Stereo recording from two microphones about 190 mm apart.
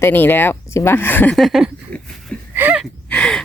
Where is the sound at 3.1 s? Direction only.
5° left (ahead or behind).